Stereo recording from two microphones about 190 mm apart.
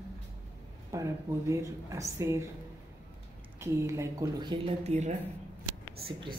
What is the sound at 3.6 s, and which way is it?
Speech, 15° right (ahead or behind).